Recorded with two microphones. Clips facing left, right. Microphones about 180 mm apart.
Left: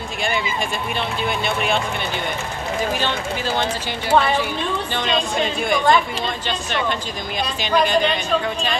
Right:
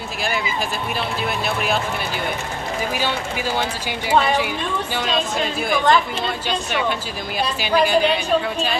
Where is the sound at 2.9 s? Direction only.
10° right (ahead or behind).